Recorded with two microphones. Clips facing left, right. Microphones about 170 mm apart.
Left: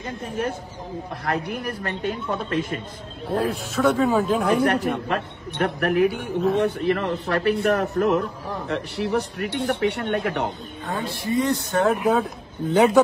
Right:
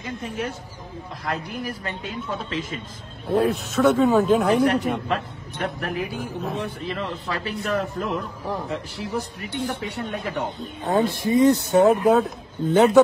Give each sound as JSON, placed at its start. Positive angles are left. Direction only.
{"t": 0.2, "sound": "a man's voice", "side_deg": 55}
{"t": 3.3, "sound": "speech", "side_deg": 0}
{"t": 5.0, "sound": "a man's voice", "side_deg": 60}
{"t": 10.9, "sound": "speech", "side_deg": -20}
{"t": 12.0, "sound": "speech", "side_deg": 0}